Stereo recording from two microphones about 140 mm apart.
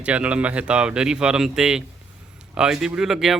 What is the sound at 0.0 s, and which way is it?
Speech, 10° right (ahead or behind).